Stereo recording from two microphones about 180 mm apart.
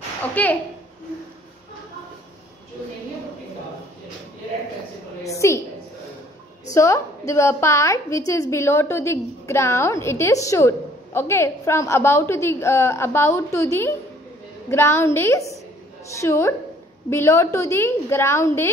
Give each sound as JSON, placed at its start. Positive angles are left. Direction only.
{"t": 0.3, "sound": "a woman's voice", "side_deg": 10}
{"t": 5.2, "sound": "a woman's voice", "side_deg": 15}
{"t": 6.7, "sound": "a woman's voice", "side_deg": 15}